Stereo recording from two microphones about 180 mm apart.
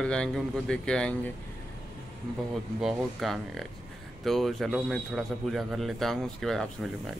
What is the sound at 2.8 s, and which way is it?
Speech, centre (ahead or behind).